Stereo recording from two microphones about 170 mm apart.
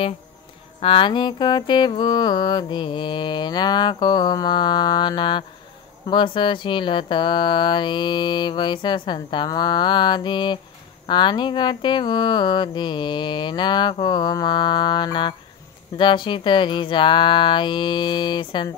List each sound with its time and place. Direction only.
0.7 s mantra: 30° left (ahead or behind)